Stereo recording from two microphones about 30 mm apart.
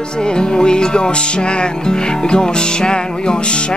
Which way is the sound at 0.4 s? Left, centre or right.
Left.